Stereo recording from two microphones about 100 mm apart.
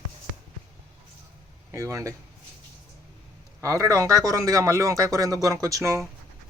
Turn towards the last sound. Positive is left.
turn(degrees=-30)  # may be behind; listen again after turning